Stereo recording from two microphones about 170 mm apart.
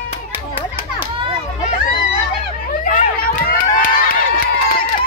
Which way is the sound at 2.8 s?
55° left (ahead or behind).